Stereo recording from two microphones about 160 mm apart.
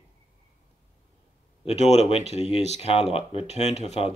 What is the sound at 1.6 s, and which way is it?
Speech, 40° left (ahead or behind).